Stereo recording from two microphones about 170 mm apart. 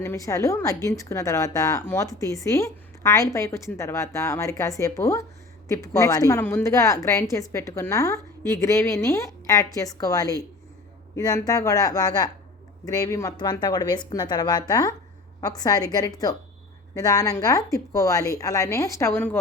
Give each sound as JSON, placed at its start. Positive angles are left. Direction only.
{"t": 0.0, "sound": "a woman's voice", "side_deg": 15}